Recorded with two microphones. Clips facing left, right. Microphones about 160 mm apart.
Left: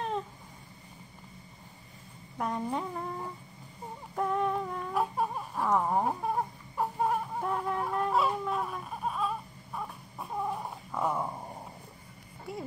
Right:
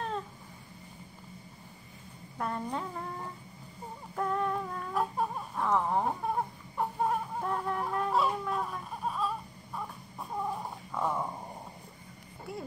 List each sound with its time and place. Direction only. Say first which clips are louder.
2.3 s speech: left 2 dB; 10° left (ahead or behind)
4.1 s baby cry: left 2 dB; 5° left (ahead or behind)
9.8 s cat: left 1 dB; 5° left (ahead or behind)